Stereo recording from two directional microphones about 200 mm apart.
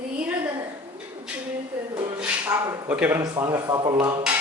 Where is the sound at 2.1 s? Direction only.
5° right (ahead or behind).